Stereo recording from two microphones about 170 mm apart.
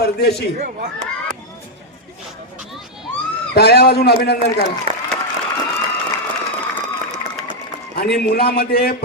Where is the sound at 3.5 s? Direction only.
70° left (ahead or behind).